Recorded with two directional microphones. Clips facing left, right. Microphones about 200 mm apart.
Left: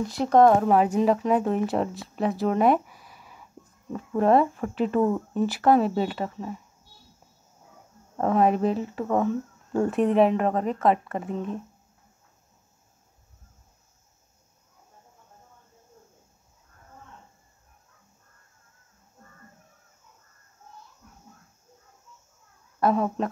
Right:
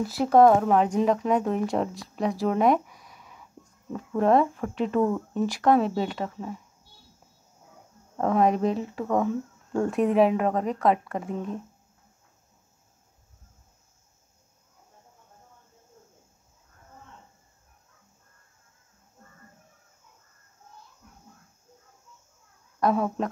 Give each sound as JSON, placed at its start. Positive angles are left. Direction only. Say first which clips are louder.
{"t": 0.0, "sound": "speech", "louder": "even", "side_deg": -5}
{"t": 8.2, "sound": "speech", "louder": "left 1 dB", "side_deg": 0}
{"t": 22.8, "sound": "speech", "louder": "left 1 dB", "side_deg": 5}